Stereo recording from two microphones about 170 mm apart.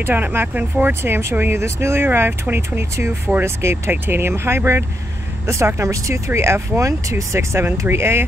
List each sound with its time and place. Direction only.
0.0 s speech: 10° right (ahead or behind)